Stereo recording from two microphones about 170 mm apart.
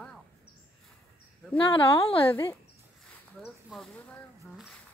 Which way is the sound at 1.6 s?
30° left (ahead or behind).